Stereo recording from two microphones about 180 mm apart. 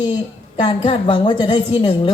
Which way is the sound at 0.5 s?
30° left (ahead or behind).